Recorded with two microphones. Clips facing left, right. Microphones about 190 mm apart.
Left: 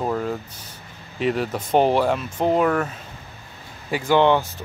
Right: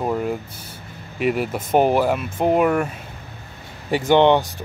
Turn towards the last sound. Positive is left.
turn(degrees=-20)  # may be behind; listen again after turning